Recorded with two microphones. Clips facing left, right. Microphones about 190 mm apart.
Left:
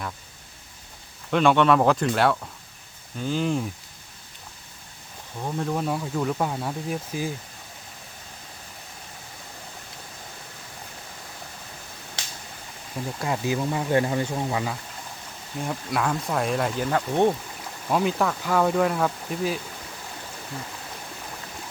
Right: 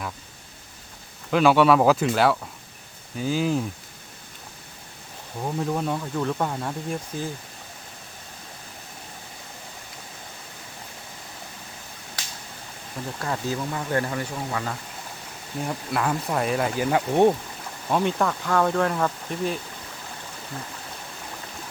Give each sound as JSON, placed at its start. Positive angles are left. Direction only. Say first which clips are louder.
{"t": 1.3, "sound": "speech", "louder": "right 1 dB", "side_deg": -5}
{"t": 5.4, "sound": "speech", "louder": "right 1 dB", "side_deg": -5}
{"t": 13.1, "sound": "speech", "louder": "left 2 dB", "side_deg": 10}
{"t": 15.6, "sound": "speech", "louder": "even", "side_deg": 0}
{"t": 17.8, "sound": "speech", "louder": "even", "side_deg": 0}